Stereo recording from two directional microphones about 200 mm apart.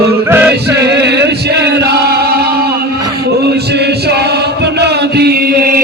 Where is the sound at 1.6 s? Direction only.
55° right (ahead or behind).